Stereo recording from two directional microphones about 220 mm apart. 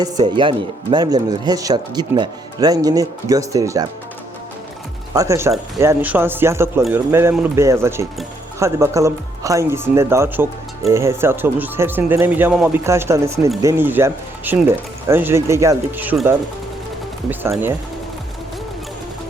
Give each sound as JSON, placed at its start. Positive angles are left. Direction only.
{"t": 0.0, "sound": "speech", "side_deg": -20}
{"t": 5.1, "sound": "speech", "side_deg": -15}